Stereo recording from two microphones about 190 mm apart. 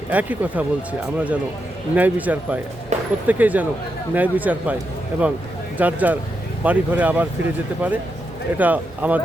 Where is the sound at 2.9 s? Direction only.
35° right (ahead or behind).